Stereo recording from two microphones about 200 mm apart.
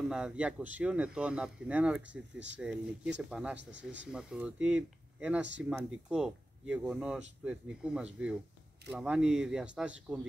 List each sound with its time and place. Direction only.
0.1 s speech: 5° right (ahead or behind)
2.3 s speech: 65° right (ahead or behind)
3.2 s speech: 5° right (ahead or behind)
3.5 s speech: 65° right (ahead or behind)
4.1 s speech: 5° right (ahead or behind)